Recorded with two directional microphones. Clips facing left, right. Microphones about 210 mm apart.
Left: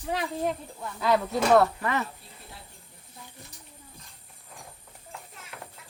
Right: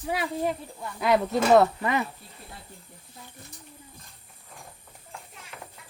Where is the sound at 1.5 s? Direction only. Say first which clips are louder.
Right 2 dB; 15° right (ahead or behind).